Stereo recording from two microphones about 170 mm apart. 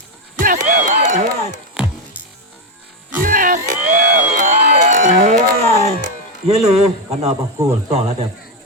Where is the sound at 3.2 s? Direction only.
55° right (ahead or behind).